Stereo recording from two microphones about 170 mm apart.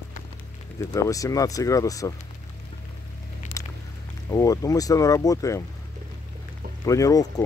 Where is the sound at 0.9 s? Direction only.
20° left (ahead or behind).